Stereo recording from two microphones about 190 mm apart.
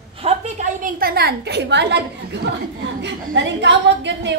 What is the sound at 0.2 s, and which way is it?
A woman's voice, 40° right (ahead or behind).